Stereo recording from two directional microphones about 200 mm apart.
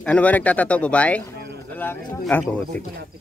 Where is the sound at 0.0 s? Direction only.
5° left (ahead or behind).